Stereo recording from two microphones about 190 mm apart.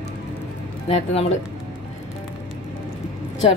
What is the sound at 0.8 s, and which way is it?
Speech, 35° left (ahead or behind).